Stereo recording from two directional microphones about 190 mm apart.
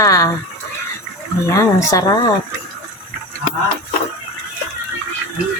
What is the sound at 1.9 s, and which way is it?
Speech, 20° left (ahead or behind).